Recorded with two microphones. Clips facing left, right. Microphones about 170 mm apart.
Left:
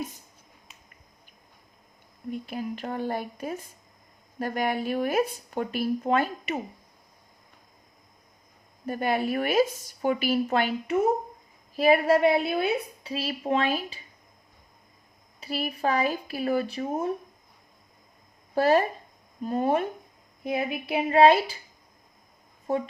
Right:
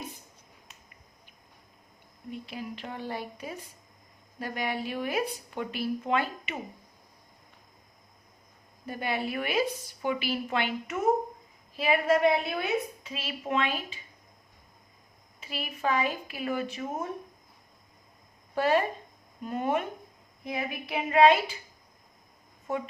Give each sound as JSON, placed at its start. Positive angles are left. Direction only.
{"t": 0.7, "sound": "finger snapping", "side_deg": 0}
{"t": 2.3, "sound": "speech", "side_deg": 45}
{"t": 8.9, "sound": "a woman's voice", "side_deg": 45}
{"t": 15.4, "sound": "a woman's voice", "side_deg": 40}
{"t": 18.5, "sound": "a woman's voice", "side_deg": 40}
{"t": 22.7, "sound": "a woman's voice", "side_deg": 35}